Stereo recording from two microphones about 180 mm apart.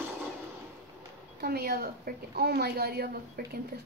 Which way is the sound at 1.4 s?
60° right (ahead or behind).